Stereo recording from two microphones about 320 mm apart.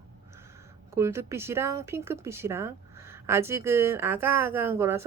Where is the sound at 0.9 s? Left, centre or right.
Centre.